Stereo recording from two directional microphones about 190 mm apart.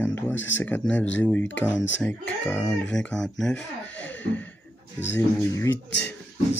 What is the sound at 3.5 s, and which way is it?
Speech, 70° left (ahead or behind).